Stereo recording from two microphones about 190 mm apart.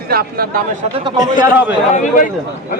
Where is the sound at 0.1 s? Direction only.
50° right (ahead or behind).